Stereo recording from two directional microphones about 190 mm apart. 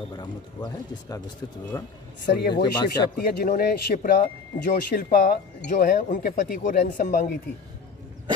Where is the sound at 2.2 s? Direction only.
60° left (ahead or behind).